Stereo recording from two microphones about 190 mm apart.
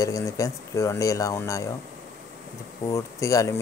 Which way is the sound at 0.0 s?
15° left (ahead or behind).